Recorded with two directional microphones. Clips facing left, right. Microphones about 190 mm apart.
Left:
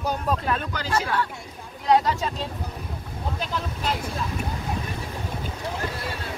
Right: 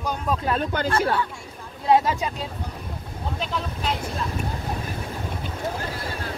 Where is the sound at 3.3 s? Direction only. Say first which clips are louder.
Right 2 dB; centre (ahead or behind).